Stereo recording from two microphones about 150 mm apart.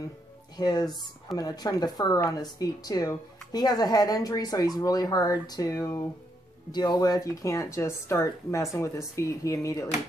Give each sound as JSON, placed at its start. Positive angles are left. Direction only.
{"t": 0.6, "sound": "speech", "side_deg": 25}